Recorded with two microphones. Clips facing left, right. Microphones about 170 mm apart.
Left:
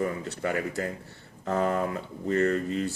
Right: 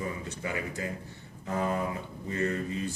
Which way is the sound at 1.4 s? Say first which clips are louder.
Left 4 dB; 65° left (ahead or behind).